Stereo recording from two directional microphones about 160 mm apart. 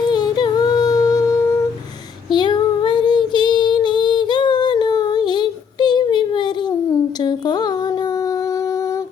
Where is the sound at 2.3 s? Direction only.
30° left (ahead or behind).